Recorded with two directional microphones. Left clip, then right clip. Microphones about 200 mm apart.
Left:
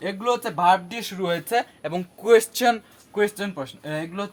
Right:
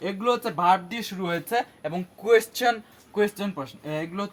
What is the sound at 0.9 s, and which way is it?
Speech, 35° left (ahead or behind).